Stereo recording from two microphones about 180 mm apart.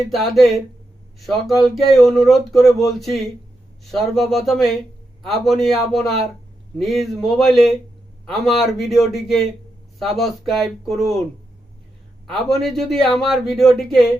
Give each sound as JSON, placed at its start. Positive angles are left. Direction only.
{"t": 0.0, "sound": "speech", "side_deg": 0}
{"t": 12.3, "sound": "speech", "side_deg": 0}